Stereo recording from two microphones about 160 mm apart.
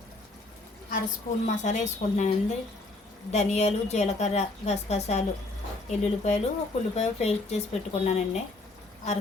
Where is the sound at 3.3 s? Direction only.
45° left (ahead or behind).